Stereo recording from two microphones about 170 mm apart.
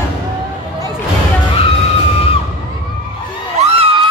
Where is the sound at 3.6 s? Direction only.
35° right (ahead or behind).